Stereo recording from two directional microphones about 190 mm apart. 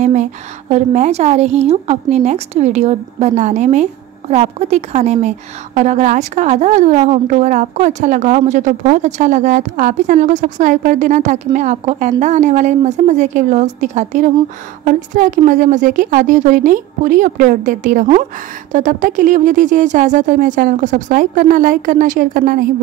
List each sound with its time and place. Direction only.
0.0 s a woman's voice: 40° right (ahead or behind)